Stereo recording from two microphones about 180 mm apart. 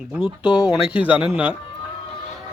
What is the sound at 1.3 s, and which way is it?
Speech, 10° right (ahead or behind).